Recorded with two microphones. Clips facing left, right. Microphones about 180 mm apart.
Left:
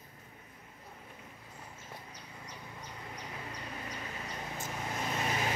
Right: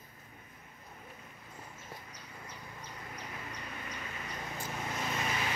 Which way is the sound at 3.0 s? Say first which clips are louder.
Left 1 dB; 30° left (ahead or behind).